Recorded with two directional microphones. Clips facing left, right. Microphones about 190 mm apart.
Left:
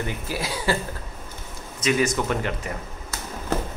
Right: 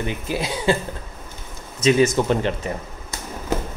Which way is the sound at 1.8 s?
30° right (ahead or behind).